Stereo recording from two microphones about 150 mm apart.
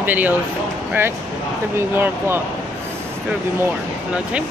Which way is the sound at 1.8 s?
15° right (ahead or behind).